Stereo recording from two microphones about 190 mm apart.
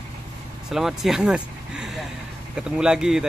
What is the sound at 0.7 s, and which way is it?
Speech, centre (ahead or behind).